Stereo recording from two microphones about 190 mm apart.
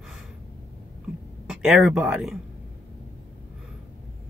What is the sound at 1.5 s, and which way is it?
Speech, centre (ahead or behind).